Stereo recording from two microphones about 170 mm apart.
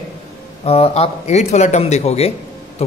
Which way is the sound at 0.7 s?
35° left (ahead or behind).